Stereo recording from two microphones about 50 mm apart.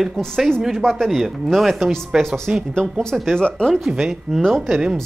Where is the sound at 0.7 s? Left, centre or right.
Centre.